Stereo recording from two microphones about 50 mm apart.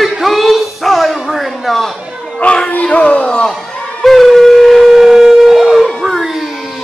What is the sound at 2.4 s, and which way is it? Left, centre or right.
Music, left.